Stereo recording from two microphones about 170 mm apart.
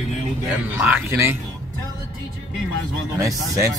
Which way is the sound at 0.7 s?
10° right (ahead or behind).